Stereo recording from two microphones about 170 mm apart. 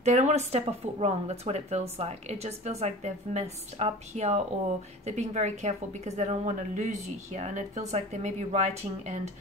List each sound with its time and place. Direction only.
0.0 s a woman's voice: 45° right (ahead or behind)